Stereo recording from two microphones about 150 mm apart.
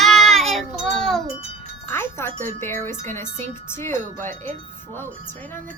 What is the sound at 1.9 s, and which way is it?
Speech, 15° left (ahead or behind).